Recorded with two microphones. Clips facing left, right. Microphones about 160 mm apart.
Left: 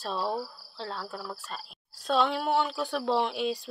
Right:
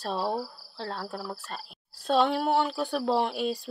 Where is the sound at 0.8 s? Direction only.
55° right (ahead or behind).